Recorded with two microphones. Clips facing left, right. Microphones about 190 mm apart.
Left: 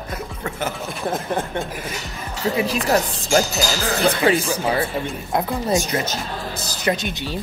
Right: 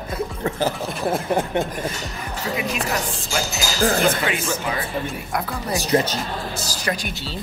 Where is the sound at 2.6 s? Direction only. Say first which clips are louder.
Left 4 dB; 35° left (ahead or behind).